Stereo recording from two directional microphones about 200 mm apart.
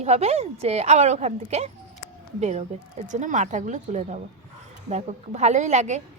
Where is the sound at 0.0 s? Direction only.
35° right (ahead or behind).